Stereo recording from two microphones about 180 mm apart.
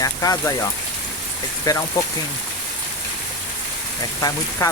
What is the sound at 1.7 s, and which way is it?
Speech, 20° left (ahead or behind).